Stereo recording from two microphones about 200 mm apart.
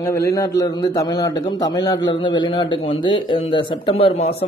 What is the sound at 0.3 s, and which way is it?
A man's voice, 15° left (ahead or behind).